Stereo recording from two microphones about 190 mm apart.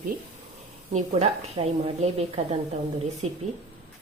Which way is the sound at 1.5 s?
35° right (ahead or behind).